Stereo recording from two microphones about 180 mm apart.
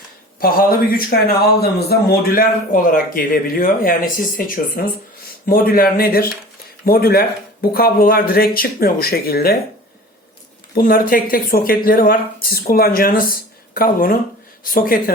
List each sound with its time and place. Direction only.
0.3 s speech: 55° left (ahead or behind)
10.8 s speech: 55° left (ahead or behind)